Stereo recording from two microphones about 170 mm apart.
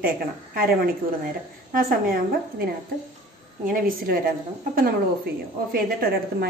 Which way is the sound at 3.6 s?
55° right (ahead or behind).